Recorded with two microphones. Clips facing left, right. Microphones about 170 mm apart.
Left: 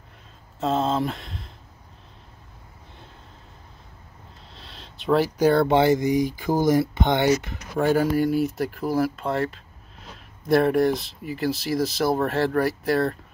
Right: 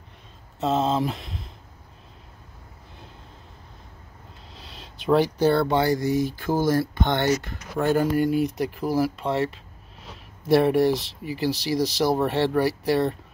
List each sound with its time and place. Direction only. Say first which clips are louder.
0.6 s speech: even; centre (ahead or behind)
4.6 s a sound: right 1 dB; centre (ahead or behind)
5.4 s speech: left 2 dB; 20° left (ahead or behind); by 13.1 s centre (ahead or behind)